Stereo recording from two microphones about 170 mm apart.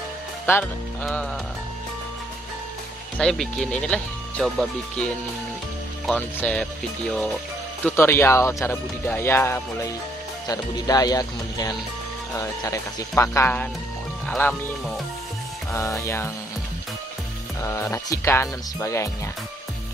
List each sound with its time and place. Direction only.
0.5 s speech: 10° left (ahead or behind)
3.2 s speech: 5° left (ahead or behind)
7.8 s speech: 15° left (ahead or behind)
15.7 s speech: 20° left (ahead or behind)
17.6 s speech: 15° left (ahead or behind)